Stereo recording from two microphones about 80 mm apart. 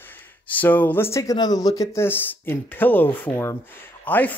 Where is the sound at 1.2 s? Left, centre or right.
Left.